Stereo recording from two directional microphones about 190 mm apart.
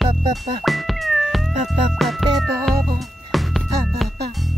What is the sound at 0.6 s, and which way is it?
Cat, centre (ahead or behind).